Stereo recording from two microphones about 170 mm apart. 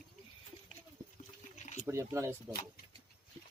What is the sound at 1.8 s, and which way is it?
Speech, 15° right (ahead or behind).